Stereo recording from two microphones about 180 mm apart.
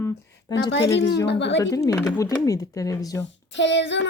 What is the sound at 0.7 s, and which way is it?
Speech, 70° left (ahead or behind).